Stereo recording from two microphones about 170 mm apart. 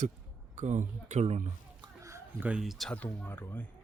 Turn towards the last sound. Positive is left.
turn(degrees=10)  # may be behind; listen again after turning